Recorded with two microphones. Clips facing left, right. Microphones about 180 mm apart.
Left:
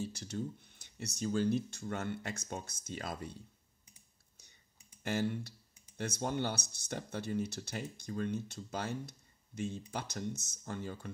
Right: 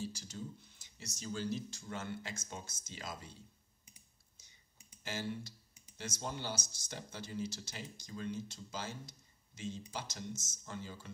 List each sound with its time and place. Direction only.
0.0 s speech: 60° left (ahead or behind)
5.0 s speech: 60° left (ahead or behind)